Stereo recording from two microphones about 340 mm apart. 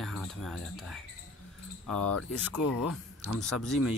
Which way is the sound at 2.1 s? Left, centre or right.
Left.